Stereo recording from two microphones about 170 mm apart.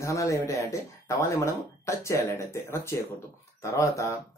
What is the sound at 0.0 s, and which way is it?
Speech, 20° left (ahead or behind).